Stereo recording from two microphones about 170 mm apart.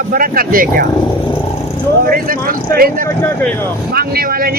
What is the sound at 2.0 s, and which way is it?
Speech, 60° right (ahead or behind).